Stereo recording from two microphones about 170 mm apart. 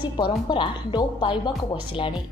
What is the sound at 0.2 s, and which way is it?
A woman's voice, 30° left (ahead or behind).